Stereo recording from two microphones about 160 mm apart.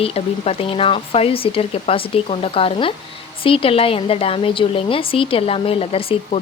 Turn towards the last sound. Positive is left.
turn(degrees=35)  # may be behind; listen again after turning